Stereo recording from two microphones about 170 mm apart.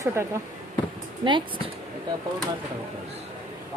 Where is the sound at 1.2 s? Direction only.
30° right (ahead or behind).